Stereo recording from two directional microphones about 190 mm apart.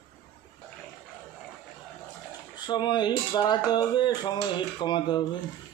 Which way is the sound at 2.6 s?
25° left (ahead or behind).